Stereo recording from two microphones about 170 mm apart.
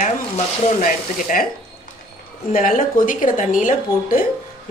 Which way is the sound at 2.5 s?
55° left (ahead or behind).